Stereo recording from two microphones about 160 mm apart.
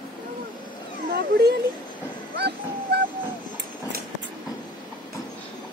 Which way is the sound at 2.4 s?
90° right.